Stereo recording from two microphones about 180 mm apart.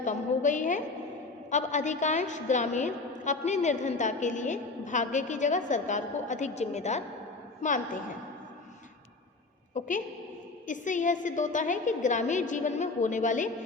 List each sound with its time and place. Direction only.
0.0 s a woman's voice: 45° left (ahead or behind)
9.7 s a woman's voice: 45° left (ahead or behind)